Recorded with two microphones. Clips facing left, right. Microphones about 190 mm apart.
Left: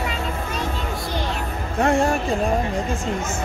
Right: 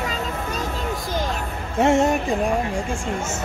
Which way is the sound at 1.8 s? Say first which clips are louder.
Right 2 dB; 25° right (ahead or behind).